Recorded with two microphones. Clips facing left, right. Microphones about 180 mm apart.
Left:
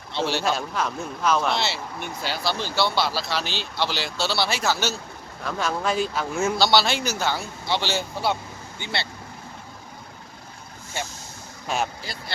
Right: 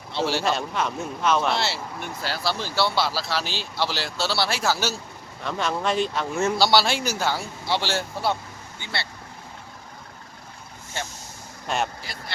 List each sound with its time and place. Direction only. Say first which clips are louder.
0.1 s a man's voice: even; 5° right (ahead or behind)
8.8 s speech: left 2 dB; 20° left (ahead or behind)
11.0 s speech: left 1 dB; 10° left (ahead or behind)